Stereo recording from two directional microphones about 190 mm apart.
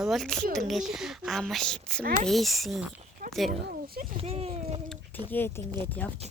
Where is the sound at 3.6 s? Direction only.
55° right (ahead or behind).